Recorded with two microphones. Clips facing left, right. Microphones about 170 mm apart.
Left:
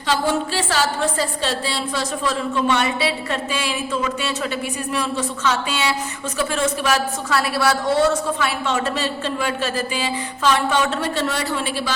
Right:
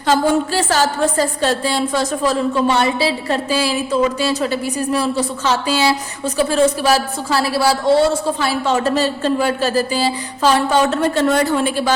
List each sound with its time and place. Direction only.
0.1 s a woman's voice: 45° right (ahead or behind)